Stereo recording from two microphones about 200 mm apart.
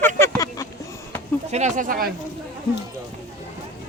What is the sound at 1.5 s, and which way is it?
Speech, 40° right (ahead or behind).